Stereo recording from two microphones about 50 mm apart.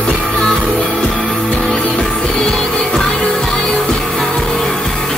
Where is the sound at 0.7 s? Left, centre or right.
Left.